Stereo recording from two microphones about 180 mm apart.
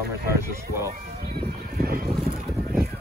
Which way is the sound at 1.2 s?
60° right (ahead or behind).